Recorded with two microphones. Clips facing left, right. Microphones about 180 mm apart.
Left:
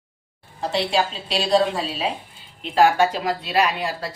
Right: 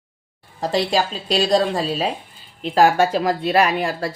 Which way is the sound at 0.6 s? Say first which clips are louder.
Right 2 dB; 40° right (ahead or behind).